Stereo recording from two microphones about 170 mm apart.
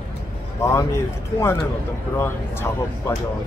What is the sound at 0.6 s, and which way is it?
Speech, 15° left (ahead or behind).